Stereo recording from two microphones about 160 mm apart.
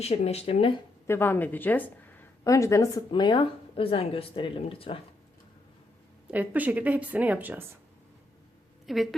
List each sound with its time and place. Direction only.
0.0 s speech: 40° left (ahead or behind)
1.0 s a woman's voice: 15° left (ahead or behind)
3.1 s speech: 30° left (ahead or behind)
6.3 s a woman's voice: 10° right (ahead or behind)
8.9 s a woman's voice: centre (ahead or behind)